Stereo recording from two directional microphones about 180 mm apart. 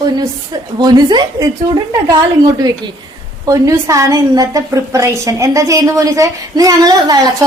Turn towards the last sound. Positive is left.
turn(degrees=-20)  # may be behind; listen again after turning